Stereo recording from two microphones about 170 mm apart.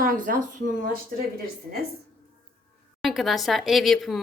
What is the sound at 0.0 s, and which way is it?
Speech, 55° right (ahead or behind).